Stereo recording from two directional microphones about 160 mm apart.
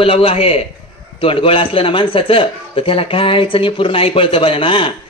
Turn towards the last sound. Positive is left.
turn(degrees=35)  # may be behind; listen again after turning